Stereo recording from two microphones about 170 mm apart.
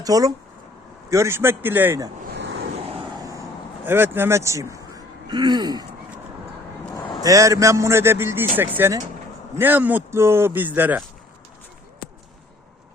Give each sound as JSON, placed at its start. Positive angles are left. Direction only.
{"t": 0.0, "sound": "a sound", "side_deg": -20}
{"t": 1.1, "sound": "speech", "side_deg": -15}
{"t": 2.3, "sound": "waves", "side_deg": -90}
{"t": 3.8, "sound": "speech", "side_deg": -10}
{"t": 5.3, "sound": "a sound", "side_deg": -25}
{"t": 7.3, "sound": "speech", "side_deg": -20}